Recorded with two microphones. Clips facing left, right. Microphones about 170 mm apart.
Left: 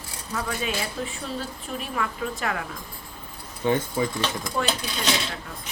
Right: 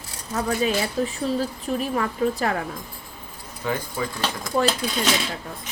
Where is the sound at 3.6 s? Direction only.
25° left (ahead or behind).